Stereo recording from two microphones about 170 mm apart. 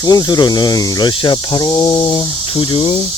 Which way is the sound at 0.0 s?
20° left (ahead or behind).